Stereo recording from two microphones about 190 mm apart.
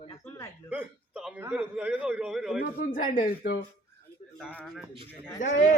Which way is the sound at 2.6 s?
45° left (ahead or behind).